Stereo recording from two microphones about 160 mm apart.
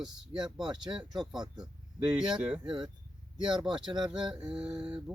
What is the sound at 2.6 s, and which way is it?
Speech, 30° right (ahead or behind).